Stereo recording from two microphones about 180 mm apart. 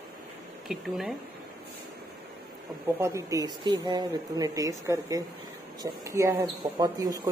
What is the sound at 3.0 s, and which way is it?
Speech, 20° right (ahead or behind).